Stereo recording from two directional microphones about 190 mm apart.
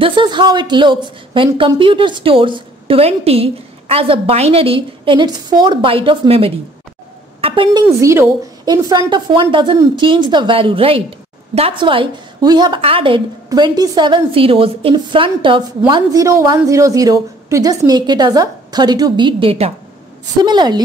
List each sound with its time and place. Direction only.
0.0 s a woman's voice: 25° right (ahead or behind)
8.0 s a woman's voice: 15° right (ahead or behind)